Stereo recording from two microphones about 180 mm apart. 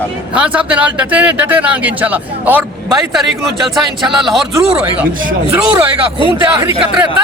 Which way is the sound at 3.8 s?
Centre (ahead or behind).